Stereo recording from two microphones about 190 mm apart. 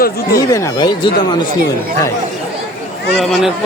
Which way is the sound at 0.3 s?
15° left (ahead or behind).